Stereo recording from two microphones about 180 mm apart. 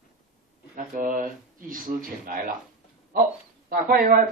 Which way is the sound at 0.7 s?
45° right (ahead or behind).